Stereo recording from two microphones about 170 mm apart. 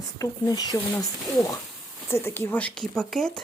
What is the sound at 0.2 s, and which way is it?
Speech, 20° left (ahead or behind).